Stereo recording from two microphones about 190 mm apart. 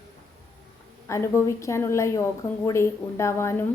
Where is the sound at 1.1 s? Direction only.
15° left (ahead or behind).